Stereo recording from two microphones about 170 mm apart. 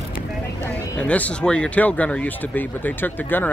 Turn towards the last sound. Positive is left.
turn(degrees=10)  # may be behind; listen again after turning